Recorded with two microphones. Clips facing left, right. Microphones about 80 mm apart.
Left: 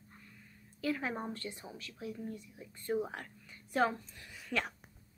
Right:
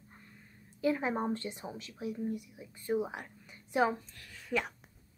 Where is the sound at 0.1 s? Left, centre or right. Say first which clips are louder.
Even; right.